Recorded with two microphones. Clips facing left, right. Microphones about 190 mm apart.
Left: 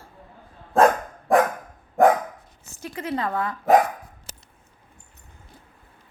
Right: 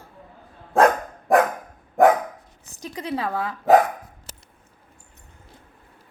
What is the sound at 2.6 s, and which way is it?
Speech, 15° right (ahead or behind).